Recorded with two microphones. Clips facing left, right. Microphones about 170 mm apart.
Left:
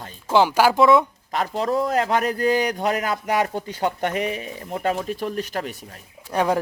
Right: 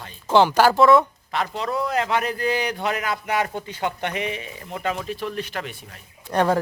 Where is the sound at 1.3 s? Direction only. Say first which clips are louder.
Left 6 dB; 40° left (ahead or behind).